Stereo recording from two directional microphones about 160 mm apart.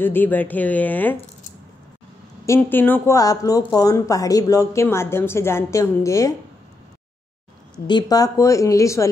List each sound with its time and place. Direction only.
0.0 s speech: 10° left (ahead or behind)
2.4 s speech: 15° left (ahead or behind)
7.7 s speech: 25° left (ahead or behind)